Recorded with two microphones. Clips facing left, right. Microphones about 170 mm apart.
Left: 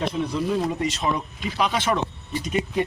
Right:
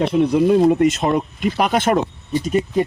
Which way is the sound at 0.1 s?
60° right (ahead or behind).